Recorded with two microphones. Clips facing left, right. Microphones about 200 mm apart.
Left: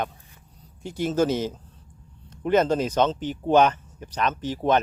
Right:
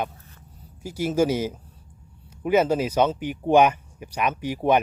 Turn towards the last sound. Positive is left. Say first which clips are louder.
# right 1 dB
turn(degrees=-10)  # may be behind; listen again after turning